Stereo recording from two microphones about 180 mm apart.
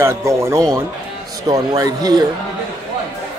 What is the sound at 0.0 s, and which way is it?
A man's voice, 15° right (ahead or behind).